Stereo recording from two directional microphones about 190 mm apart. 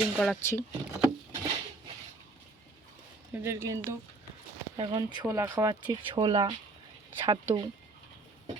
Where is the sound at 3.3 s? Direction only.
15° right (ahead or behind).